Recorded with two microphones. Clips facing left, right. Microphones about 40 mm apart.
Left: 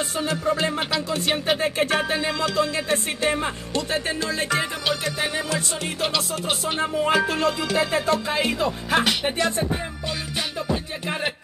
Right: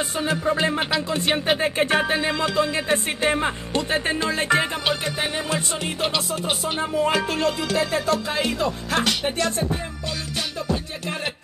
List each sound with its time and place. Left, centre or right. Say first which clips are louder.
0.1 s music: right 1 dB; centre
7.0 s music: even; centre